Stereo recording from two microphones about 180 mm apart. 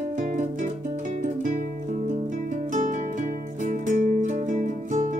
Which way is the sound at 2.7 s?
45° right (ahead or behind).